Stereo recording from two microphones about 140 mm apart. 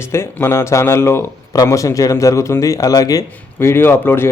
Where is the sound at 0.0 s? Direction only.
20° left (ahead or behind).